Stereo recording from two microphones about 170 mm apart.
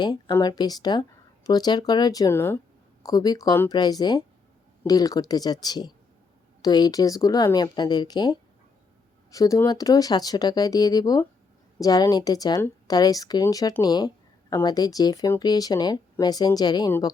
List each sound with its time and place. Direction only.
0.0 s speech: 20° left (ahead or behind)